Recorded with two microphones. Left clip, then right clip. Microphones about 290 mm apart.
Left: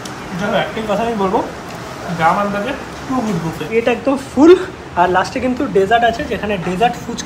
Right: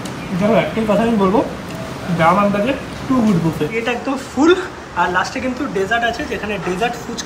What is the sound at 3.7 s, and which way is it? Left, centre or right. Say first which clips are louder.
A woman's voice: left 5 dB; centre.